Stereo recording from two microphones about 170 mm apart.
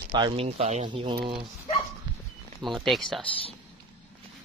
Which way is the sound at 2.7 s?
Centre (ahead or behind).